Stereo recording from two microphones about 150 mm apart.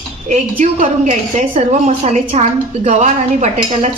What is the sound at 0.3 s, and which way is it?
A woman's voice, 55° right (ahead or behind).